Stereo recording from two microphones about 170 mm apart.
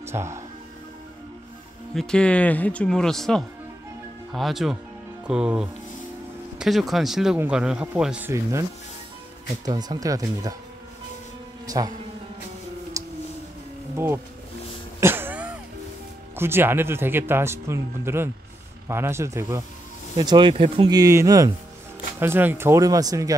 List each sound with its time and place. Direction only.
0.0 s speech: 15° right (ahead or behind)
2.0 s a man's voice: 5° left (ahead or behind); by 8.6 s 15° right (ahead or behind)
9.7 s speech: 25° right (ahead or behind)
11.6 s music: 20° right (ahead or behind)
13.0 s a sound: 20° right (ahead or behind)
13.9 s speech: 15° right (ahead or behind)
15.0 s cough: 15° right (ahead or behind)
16.3 s speech: 15° right (ahead or behind)